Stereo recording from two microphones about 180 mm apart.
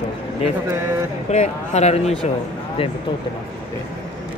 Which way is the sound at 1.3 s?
40° left (ahead or behind).